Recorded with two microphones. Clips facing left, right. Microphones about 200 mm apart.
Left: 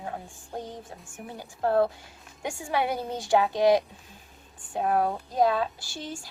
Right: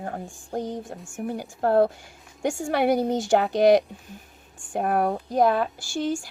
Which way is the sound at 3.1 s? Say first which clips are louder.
Right 4 dB; 45° right (ahead or behind).